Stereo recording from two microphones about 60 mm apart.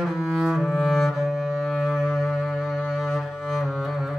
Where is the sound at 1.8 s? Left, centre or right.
Centre.